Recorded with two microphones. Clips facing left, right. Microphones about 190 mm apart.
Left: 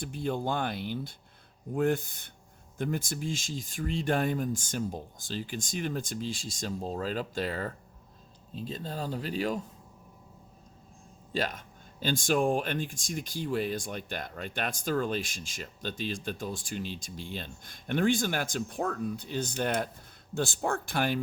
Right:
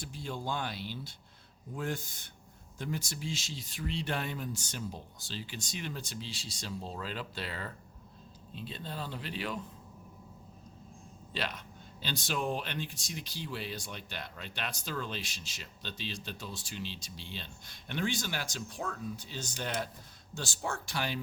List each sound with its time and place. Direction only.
0.0 s speech: 55° left (ahead or behind); by 9.6 s 40° left (ahead or behind)
11.3 s speech: 45° left (ahead or behind)